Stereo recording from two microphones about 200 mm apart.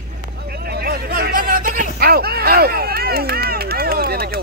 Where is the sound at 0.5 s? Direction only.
50° right (ahead or behind).